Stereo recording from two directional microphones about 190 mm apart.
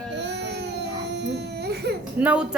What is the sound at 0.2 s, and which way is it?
Baby cry, 65° right (ahead or behind).